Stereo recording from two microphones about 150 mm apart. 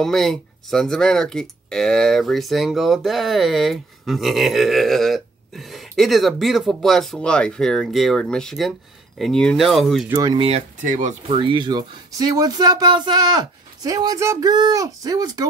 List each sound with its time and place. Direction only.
0.0 s speech: centre (ahead or behind)
10.0 s speech: 20° right (ahead or behind)
10.3 s speech: 45° right (ahead or behind)
10.9 s speech: 55° right (ahead or behind)
11.2 s speech: 35° right (ahead or behind)